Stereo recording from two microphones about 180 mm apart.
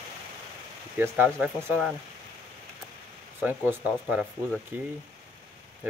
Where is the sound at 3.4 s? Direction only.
10° right (ahead or behind).